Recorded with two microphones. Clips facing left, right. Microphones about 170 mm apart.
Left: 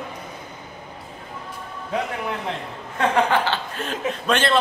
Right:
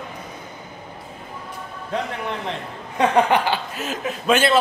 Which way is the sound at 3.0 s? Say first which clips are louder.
Right 2 dB; 15° right (ahead or behind).